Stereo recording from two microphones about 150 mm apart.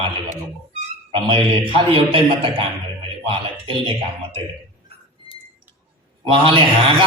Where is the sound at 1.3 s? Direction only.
35° right (ahead or behind).